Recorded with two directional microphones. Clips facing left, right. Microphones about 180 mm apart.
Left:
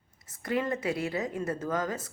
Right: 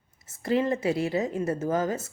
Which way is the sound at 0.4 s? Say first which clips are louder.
Right 5 dB; 25° right (ahead or behind).